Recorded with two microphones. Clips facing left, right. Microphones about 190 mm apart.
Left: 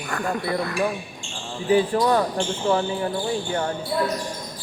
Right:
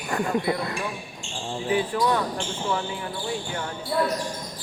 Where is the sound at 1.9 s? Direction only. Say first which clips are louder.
Left 4 dB; 35° left (ahead or behind).